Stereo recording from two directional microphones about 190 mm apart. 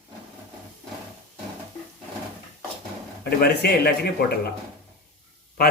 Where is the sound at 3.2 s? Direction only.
55° left (ahead or behind).